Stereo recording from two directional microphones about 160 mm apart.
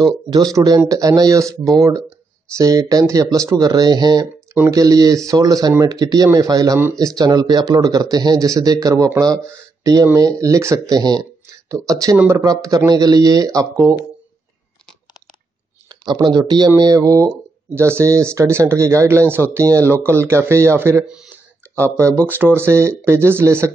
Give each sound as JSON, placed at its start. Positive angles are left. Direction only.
{"t": 0.0, "sound": "speech", "side_deg": -25}
{"t": 15.9, "sound": "speech", "side_deg": -25}
{"t": 22.6, "sound": "speech", "side_deg": -15}